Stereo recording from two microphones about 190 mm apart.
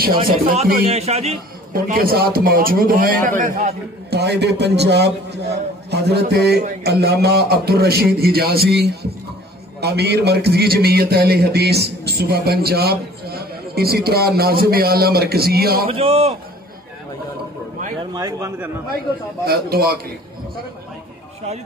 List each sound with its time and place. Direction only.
0.5 s a man's voice: 40° right (ahead or behind)
1.7 s a man's voice: 50° right (ahead or behind)
4.1 s a man's voice: 60° right (ahead or behind)
15.9 s a man's voice: 30° right (ahead or behind)
18.1 s a man's voice: 15° right (ahead or behind)
19.4 s a man's voice: 55° right (ahead or behind)